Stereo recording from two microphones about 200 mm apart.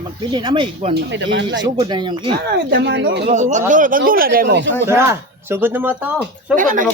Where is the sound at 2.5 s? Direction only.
65° right (ahead or behind).